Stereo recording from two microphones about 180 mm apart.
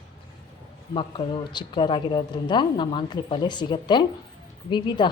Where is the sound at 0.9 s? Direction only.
30° left (ahead or behind).